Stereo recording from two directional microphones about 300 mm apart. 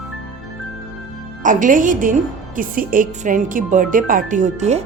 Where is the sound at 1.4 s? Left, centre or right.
Right.